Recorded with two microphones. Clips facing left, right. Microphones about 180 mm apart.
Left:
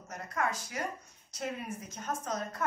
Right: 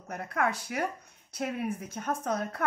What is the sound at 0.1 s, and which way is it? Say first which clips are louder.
A woman's voice: right 4 dB; 60° right (ahead or behind).